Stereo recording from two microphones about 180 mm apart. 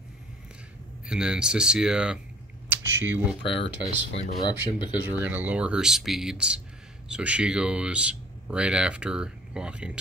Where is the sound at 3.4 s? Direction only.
30° left (ahead or behind).